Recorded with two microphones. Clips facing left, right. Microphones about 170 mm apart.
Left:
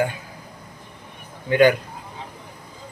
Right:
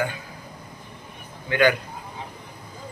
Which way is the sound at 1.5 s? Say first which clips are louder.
Left 5 dB; 35° left (ahead or behind).